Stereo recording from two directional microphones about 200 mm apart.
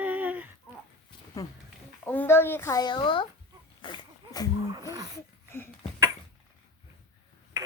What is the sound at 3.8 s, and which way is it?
Dog, 25° left (ahead or behind).